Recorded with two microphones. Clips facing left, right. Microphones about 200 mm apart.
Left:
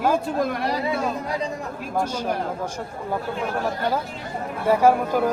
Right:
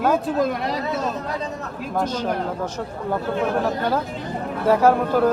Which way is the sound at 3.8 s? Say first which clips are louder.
Right 2 dB; 10° left (ahead or behind).